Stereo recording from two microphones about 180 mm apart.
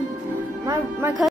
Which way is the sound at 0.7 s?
15° right (ahead or behind).